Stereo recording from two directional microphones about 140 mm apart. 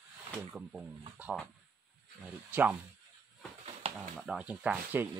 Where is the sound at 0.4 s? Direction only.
5° right (ahead or behind).